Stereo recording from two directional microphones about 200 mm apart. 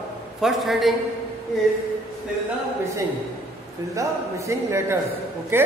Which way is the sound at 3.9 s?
15° right (ahead or behind).